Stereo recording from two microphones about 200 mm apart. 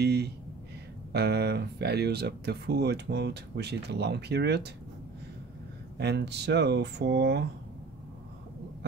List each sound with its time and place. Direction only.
0.0 s speech: 55° right (ahead or behind)
5.9 s speech: 55° right (ahead or behind)